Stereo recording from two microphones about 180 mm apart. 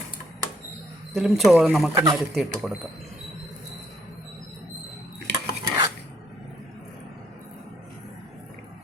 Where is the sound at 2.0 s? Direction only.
20° right (ahead or behind).